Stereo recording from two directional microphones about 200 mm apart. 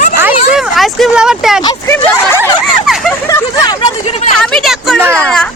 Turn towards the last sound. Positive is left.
turn(degrees=5)  # may be behind; listen again after turning